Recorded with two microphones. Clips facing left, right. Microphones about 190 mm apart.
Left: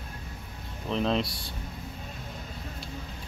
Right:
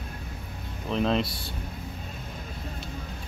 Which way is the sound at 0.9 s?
Centre (ahead or behind).